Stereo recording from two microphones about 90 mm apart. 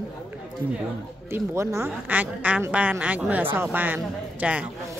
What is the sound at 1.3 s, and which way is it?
Speech, 30° right (ahead or behind).